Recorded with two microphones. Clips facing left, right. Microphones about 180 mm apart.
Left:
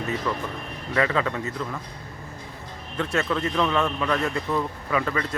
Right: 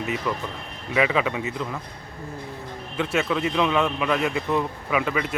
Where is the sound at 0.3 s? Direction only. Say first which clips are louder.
Even; 10° right (ahead or behind).